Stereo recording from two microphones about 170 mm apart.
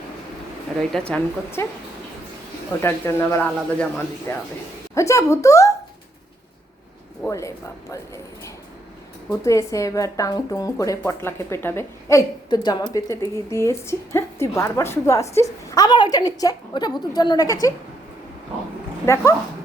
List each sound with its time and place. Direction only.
0.8 s speech: 5° left (ahead or behind)
2.8 s speech: 15° left (ahead or behind)
7.2 s speech: 15° left (ahead or behind)
9.3 s speech: 15° left (ahead or behind)
19.0 s speech: 15° left (ahead or behind)